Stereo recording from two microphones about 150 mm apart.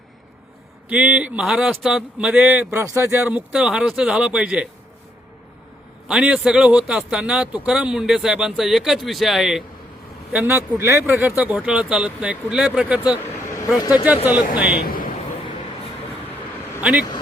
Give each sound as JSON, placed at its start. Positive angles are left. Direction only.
{"t": 0.9, "sound": "a man's voice", "side_deg": -10}
{"t": 6.1, "sound": "a man's voice", "side_deg": -5}
{"t": 10.3, "sound": "speech", "side_deg": -15}
{"t": 13.8, "sound": "speech", "side_deg": 25}
{"t": 14.8, "sound": "a sound", "side_deg": 65}
{"t": 16.8, "sound": "speech", "side_deg": -10}